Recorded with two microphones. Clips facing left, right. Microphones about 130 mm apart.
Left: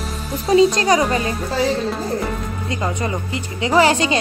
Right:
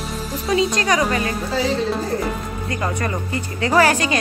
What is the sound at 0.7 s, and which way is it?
Speech, 30° left (ahead or behind).